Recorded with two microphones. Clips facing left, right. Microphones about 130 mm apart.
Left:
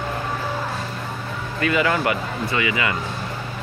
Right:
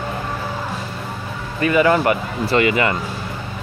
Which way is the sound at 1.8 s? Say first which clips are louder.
Right 5 dB; 35° right (ahead or behind).